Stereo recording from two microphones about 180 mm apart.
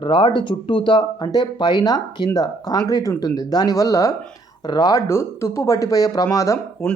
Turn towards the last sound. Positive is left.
turn(degrees=20)  # may be behind; listen again after turning